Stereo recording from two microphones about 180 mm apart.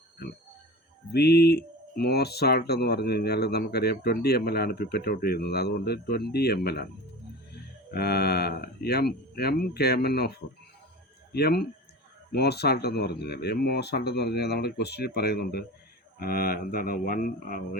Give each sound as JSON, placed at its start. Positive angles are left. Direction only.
{"t": 0.2, "sound": "speech", "side_deg": 60}
{"t": 7.9, "sound": "speech", "side_deg": 60}